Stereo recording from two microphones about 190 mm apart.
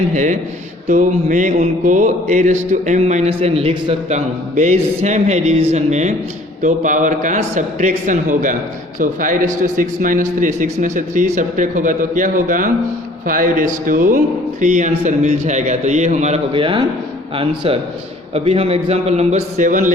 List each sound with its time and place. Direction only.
0.1 s a man's voice: 40° right (ahead or behind)